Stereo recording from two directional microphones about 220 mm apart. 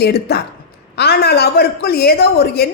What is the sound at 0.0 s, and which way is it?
A woman's voice, 45° left (ahead or behind).